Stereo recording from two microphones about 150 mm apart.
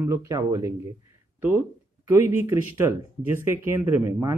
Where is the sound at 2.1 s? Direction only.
15° right (ahead or behind).